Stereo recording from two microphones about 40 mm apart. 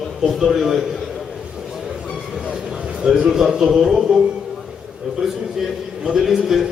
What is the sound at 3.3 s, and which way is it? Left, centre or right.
Speech, centre.